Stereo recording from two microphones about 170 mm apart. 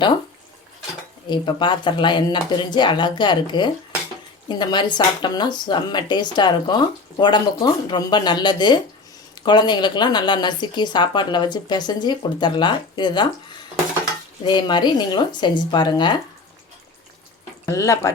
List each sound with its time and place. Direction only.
1.3 s speech: 30° left (ahead or behind)
14.4 s speech: 25° left (ahead or behind)
17.7 s speech: 20° left (ahead or behind)